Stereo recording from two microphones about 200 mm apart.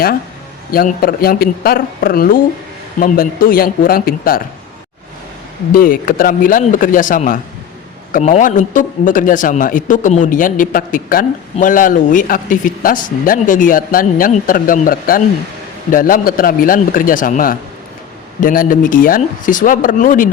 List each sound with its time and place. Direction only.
0.7 s speech: 45° left (ahead or behind)
5.7 s a man's voice: 45° left (ahead or behind)